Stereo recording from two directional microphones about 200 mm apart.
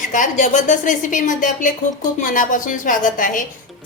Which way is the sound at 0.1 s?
40° left (ahead or behind).